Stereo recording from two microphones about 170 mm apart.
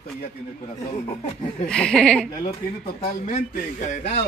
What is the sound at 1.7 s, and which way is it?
Speech, 5° left (ahead or behind).